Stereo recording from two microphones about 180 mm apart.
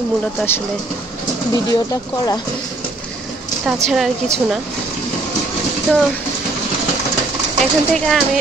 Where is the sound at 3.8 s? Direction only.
Centre (ahead or behind).